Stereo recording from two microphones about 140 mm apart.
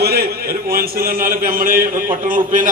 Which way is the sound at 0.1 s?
90° right.